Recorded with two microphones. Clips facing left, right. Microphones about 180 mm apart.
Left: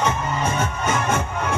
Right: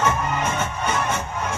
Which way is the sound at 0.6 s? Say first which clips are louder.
Left 2 dB; 45° left (ahead or behind).